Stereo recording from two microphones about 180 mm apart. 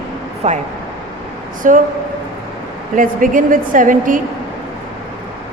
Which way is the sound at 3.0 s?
45° right (ahead or behind).